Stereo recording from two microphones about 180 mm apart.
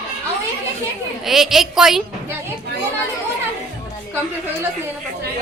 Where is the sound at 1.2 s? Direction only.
Centre (ahead or behind).